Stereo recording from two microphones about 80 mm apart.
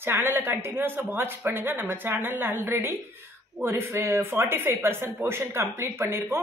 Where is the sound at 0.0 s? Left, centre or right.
Right.